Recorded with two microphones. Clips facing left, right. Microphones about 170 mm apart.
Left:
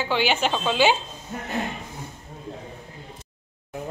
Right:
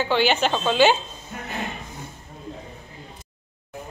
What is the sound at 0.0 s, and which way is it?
Speech, 10° left (ahead or behind).